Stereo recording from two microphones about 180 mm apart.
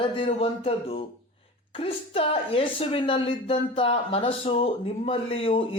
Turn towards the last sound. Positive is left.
turn(degrees=30)  # may be behind; listen again after turning